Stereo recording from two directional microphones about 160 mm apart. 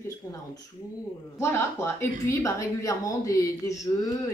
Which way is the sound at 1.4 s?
15° left (ahead or behind).